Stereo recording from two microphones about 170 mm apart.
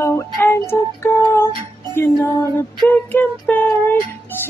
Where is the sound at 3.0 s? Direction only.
10° left (ahead or behind).